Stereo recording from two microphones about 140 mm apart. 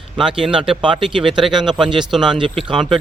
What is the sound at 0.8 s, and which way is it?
Speech, 35° right (ahead or behind).